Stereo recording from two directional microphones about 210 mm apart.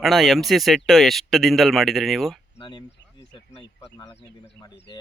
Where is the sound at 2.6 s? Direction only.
20° left (ahead or behind).